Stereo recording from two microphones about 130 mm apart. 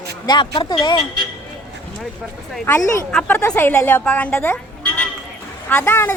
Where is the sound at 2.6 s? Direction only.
15° left (ahead or behind).